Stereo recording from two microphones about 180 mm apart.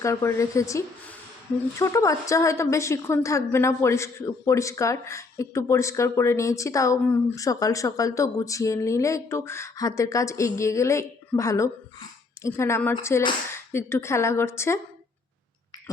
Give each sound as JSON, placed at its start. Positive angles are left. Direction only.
{"t": 0.0, "sound": "a woman's voice", "side_deg": 15}